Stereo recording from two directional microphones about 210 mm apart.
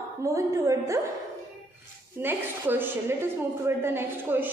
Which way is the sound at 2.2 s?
10° right (ahead or behind).